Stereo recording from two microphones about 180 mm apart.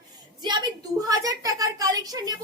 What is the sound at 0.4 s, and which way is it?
A woman's voice, 25° right (ahead or behind).